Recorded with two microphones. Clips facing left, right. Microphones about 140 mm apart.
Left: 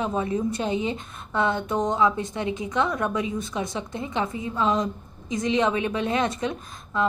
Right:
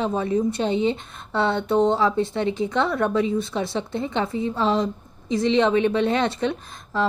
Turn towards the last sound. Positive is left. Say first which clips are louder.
# right 1 dB
turn(degrees=-30)  # may be behind; listen again after turning